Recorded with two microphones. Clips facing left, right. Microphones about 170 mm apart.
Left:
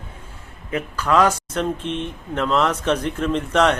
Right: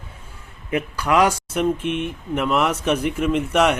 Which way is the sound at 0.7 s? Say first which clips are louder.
Even; 15° right (ahead or behind).